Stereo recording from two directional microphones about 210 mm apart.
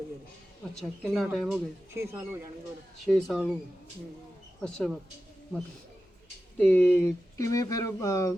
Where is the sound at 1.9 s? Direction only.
10° right (ahead or behind).